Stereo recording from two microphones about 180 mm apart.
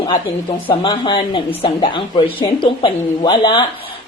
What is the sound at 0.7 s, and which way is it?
A woman's voice, 25° left (ahead or behind).